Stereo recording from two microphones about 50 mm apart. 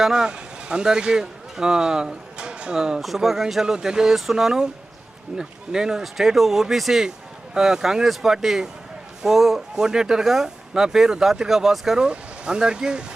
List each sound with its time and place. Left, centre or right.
0.0 s speech: centre
12.0 s speech: centre